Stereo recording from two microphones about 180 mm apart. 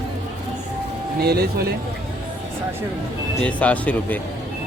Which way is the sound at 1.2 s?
60° right (ahead or behind).